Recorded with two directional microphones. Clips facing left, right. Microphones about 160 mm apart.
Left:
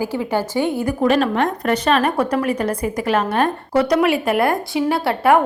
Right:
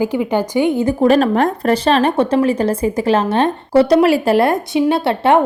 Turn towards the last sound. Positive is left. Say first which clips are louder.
# right 2 dB
turn(degrees=-25)  # may be behind; listen again after turning